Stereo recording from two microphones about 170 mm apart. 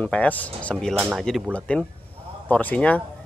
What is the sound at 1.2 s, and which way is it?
Speech, 5° left (ahead or behind).